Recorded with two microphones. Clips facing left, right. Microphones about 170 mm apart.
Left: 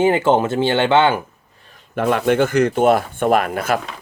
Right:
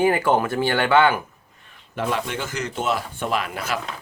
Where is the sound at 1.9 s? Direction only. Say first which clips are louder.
Left 9 dB; 55° left (ahead or behind).